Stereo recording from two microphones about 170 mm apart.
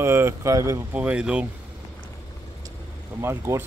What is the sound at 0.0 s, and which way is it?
Speech, 15° right (ahead or behind).